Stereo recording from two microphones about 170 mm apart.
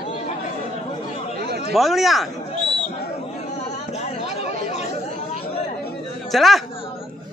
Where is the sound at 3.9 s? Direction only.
40° left (ahead or behind).